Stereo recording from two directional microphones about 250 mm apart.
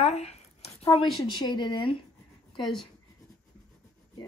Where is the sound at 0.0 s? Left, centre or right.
Left.